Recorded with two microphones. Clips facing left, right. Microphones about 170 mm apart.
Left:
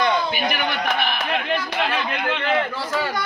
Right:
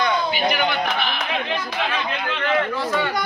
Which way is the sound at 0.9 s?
55° left (ahead or behind).